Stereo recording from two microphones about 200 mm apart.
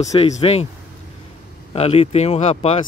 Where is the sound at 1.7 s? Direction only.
30° left (ahead or behind).